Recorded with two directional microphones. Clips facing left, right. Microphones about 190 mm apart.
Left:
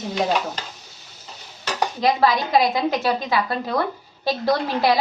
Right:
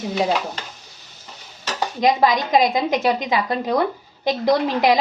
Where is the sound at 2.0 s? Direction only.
15° right (ahead or behind).